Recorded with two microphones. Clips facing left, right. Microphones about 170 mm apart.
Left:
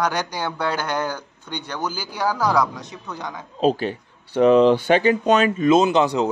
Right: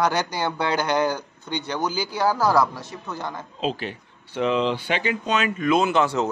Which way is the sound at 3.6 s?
40° left (ahead or behind).